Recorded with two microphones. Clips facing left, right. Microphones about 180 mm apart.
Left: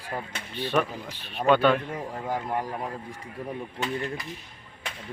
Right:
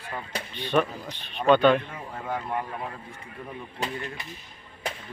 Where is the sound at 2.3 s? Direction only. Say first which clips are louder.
Left 1 dB; 35° left (ahead or behind).